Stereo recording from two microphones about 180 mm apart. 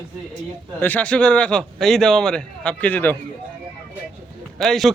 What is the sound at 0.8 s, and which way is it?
A man's voice, 10° left (ahead or behind).